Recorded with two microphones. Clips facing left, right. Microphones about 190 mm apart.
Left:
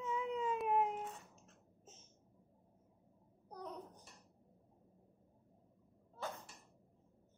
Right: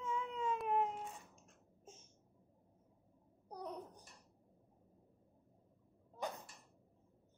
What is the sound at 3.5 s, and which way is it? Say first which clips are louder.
Babbling: right 2 dB; 10° right (ahead or behind).